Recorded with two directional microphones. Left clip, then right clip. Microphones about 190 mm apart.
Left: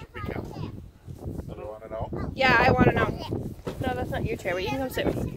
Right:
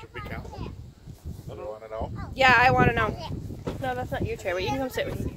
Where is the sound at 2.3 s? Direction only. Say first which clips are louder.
Right 2 dB; 55° right (ahead or behind).